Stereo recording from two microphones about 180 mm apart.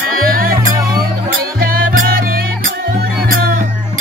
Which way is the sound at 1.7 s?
55° right (ahead or behind).